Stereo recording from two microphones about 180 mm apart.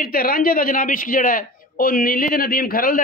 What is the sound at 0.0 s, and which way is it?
A man's voice, 55° left (ahead or behind).